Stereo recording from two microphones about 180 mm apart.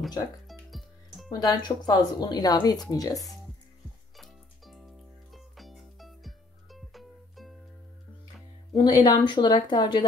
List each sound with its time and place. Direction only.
0.5 s music: centre (ahead or behind)
1.3 s speech: 20° left (ahead or behind)
4.2 s music: centre (ahead or behind)
8.7 s speech: 20° left (ahead or behind)